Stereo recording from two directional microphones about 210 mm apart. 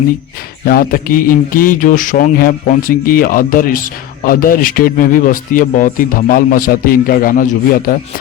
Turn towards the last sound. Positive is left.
turn(degrees=40)  # may be behind; listen again after turning